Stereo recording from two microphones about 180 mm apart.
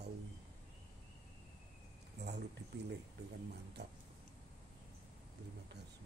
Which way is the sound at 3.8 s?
70° right (ahead or behind).